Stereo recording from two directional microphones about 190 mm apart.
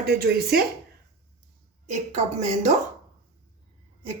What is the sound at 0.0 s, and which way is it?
Speech, 55° right (ahead or behind).